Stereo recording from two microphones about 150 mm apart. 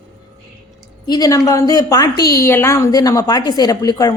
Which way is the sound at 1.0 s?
25° left (ahead or behind).